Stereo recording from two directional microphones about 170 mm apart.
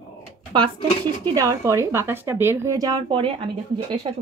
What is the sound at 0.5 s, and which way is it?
Speech, 25° right (ahead or behind).